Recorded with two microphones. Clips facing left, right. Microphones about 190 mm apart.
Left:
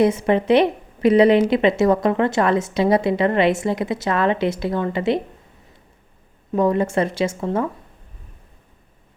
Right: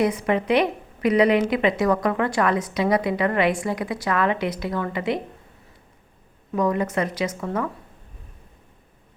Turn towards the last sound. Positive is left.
turn(degrees=25)  # may be behind; listen again after turning